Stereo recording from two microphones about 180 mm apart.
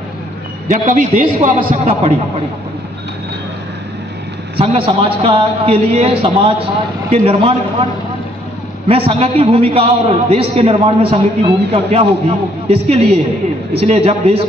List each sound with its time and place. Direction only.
0.7 s a man's voice: 45° right (ahead or behind)
4.6 s a man's voice: 30° right (ahead or behind)
8.8 s a man's voice: 30° right (ahead or behind)